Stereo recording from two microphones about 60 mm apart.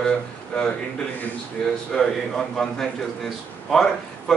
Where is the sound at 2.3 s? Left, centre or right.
Centre.